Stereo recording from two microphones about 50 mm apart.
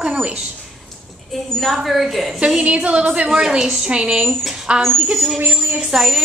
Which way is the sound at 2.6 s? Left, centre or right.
Right.